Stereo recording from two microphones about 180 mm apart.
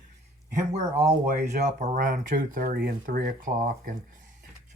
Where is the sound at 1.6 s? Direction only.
45° right (ahead or behind).